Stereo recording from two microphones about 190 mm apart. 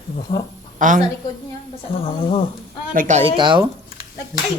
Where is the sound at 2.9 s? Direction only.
40° right (ahead or behind).